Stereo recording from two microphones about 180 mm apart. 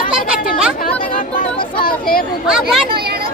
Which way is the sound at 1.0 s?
50° left (ahead or behind).